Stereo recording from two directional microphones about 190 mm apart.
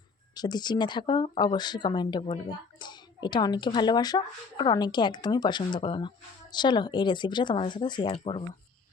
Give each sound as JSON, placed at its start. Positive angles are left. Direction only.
{"t": 0.3, "sound": "speech", "side_deg": 20}